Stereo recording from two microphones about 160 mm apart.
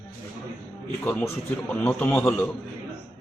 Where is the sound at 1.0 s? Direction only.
10° left (ahead or behind).